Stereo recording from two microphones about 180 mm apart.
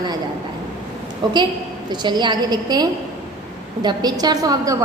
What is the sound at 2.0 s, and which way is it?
A woman's voice, 25° right (ahead or behind).